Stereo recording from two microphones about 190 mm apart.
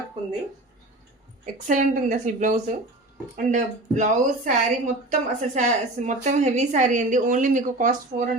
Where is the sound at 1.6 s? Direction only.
45° right (ahead or behind).